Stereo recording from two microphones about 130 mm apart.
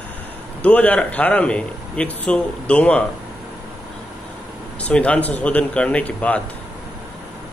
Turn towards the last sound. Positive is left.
turn(degrees=10)  # may be behind; listen again after turning